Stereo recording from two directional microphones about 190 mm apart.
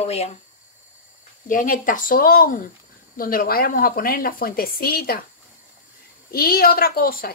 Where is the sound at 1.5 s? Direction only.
45° left (ahead or behind).